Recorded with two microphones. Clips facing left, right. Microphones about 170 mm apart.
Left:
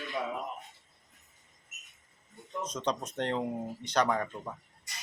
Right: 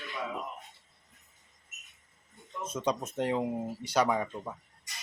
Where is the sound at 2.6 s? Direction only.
10° right (ahead or behind).